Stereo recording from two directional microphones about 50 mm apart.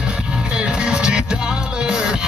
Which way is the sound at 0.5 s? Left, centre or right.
Centre.